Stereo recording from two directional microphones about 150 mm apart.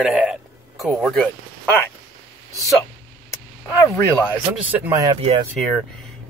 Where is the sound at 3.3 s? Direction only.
20° left (ahead or behind).